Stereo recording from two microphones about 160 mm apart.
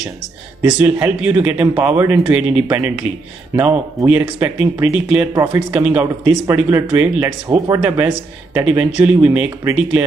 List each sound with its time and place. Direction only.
0.6 s speech: 10° right (ahead or behind)
5.7 s speech: 5° right (ahead or behind)